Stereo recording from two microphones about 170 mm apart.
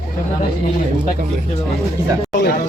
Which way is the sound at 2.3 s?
75° left (ahead or behind).